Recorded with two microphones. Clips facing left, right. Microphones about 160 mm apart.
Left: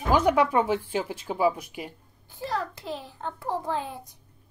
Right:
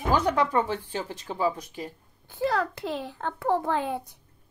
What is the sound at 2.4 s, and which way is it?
A child's voice, 70° right (ahead or behind).